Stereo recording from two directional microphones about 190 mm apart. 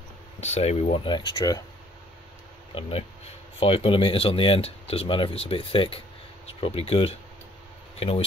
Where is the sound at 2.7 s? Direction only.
30° left (ahead or behind).